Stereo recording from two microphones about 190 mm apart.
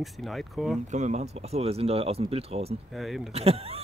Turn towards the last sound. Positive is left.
turn(degrees=-30)  # may be behind; listen again after turning